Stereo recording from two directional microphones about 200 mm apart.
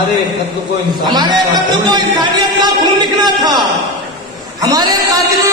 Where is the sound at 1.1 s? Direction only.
20° right (ahead or behind).